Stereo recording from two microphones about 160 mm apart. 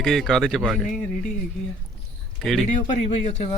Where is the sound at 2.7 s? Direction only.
45° left (ahead or behind).